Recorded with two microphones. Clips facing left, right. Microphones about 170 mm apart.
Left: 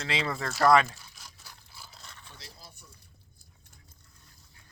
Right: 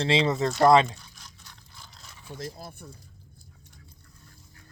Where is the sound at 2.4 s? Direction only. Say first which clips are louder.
Right 14 dB; 55° right (ahead or behind).